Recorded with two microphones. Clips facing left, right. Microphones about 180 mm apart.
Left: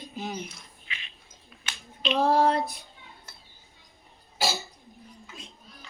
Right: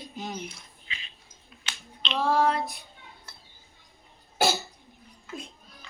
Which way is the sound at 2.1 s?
40° left (ahead or behind).